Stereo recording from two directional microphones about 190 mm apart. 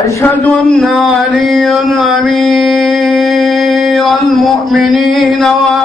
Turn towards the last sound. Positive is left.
turn(degrees=0)  # may be behind; listen again after turning